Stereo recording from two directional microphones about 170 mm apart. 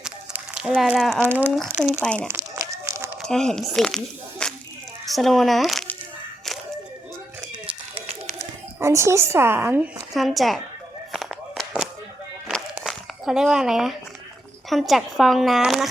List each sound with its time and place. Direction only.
0.0 s a sound: 5° right (ahead or behind)
0.9 s speech: centre (ahead or behind)
1.2 s a woman's voice: 10° right (ahead or behind)
1.8 s speech: 5° left (ahead or behind)
2.2 s crumpling: 15° right (ahead or behind)
3.2 s speech: 5° left (ahead or behind)
8.8 s a woman's voice: 15° right (ahead or behind)
10.2 s speech: centre (ahead or behind)
11.1 s a sound: centre (ahead or behind)
12.7 s crumpling: centre (ahead or behind)
14.7 s speech: centre (ahead or behind)